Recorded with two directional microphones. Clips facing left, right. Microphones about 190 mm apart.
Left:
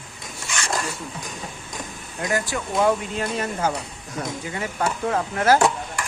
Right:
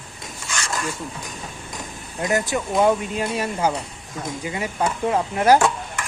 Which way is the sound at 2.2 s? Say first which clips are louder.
Right 3 dB; 20° right (ahead or behind).